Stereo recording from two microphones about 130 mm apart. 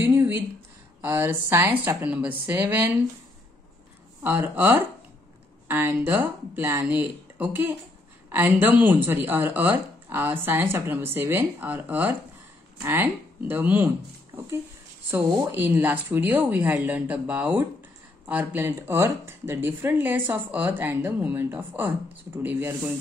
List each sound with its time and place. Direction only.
0.0 s a sound: 20° right (ahead or behind)
1.0 s speech: 15° right (ahead or behind)
4.2 s speech: 15° right (ahead or behind)
15.0 s speech: 15° right (ahead or behind)